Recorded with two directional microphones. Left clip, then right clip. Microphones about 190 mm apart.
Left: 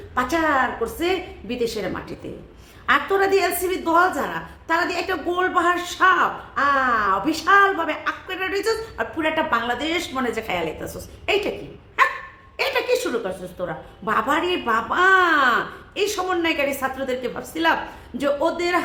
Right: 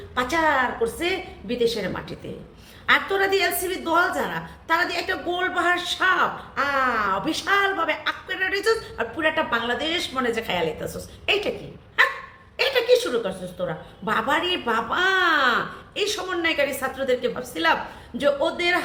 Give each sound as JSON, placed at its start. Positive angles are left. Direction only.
{"t": 0.1, "sound": "a woman's voice", "side_deg": 15}
{"t": 12.5, "sound": "a woman's voice", "side_deg": 15}